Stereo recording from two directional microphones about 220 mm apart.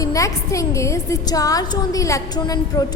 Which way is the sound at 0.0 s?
15° left (ahead or behind).